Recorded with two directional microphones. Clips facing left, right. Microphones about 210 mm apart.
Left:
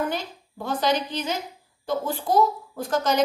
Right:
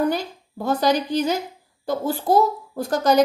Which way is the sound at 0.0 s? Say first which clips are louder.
Right 6 dB; 40° right (ahead or behind).